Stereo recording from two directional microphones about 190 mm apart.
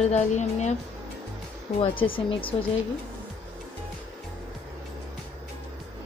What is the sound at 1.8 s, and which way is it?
Speech, 25° left (ahead or behind).